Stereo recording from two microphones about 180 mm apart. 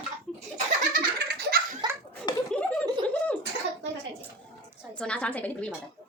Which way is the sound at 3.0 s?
5° left (ahead or behind).